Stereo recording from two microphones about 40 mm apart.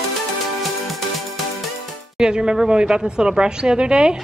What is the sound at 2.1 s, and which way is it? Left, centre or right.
A woman's voice, right.